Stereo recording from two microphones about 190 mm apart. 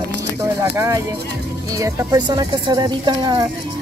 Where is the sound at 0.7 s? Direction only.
15° right (ahead or behind).